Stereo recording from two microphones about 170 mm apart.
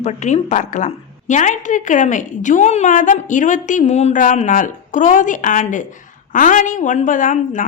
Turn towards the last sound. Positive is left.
turn(degrees=45)  # may be behind; listen again after turning